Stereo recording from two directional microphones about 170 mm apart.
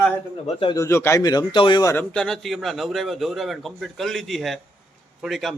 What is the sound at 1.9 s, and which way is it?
A man's voice, 5° left (ahead or behind).